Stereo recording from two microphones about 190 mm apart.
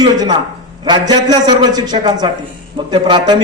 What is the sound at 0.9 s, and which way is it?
A man's voice, 20° right (ahead or behind).